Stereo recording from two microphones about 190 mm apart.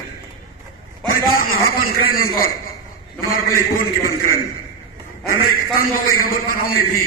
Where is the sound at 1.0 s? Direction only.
50° left (ahead or behind).